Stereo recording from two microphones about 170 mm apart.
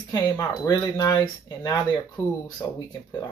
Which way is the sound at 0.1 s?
25° left (ahead or behind).